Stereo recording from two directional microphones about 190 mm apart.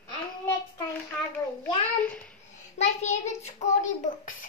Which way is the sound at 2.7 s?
35° left (ahead or behind).